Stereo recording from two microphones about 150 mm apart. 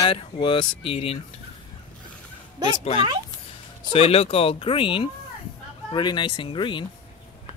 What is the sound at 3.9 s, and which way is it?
Speech, 40° left (ahead or behind).